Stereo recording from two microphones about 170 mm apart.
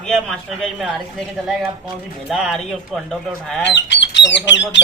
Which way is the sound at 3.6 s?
90° left.